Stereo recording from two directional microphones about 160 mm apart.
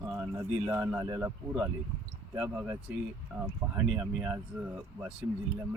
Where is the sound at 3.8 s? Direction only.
10° right (ahead or behind).